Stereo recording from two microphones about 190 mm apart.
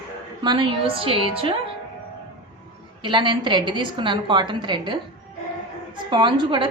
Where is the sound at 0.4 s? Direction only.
25° right (ahead or behind).